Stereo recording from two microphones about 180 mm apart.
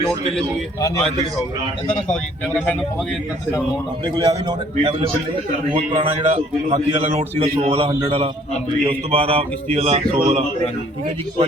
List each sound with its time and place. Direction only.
0.8 s a man's voice: 15° left (ahead or behind)
4.0 s a man's voice: 25° right (ahead or behind)